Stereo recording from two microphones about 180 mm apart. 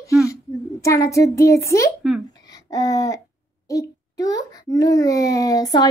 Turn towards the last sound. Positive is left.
turn(degrees=20)  # may be behind; listen again after turning